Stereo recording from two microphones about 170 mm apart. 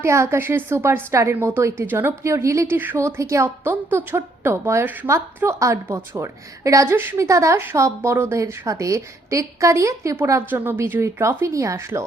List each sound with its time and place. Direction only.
0.0 s a woman's voice: 15° right (ahead or behind)